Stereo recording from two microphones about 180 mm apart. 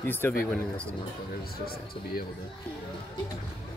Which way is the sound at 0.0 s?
10° left (ahead or behind).